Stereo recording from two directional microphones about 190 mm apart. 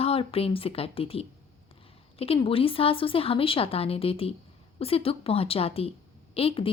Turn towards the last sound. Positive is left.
turn(degrees=30)  # may be behind; listen again after turning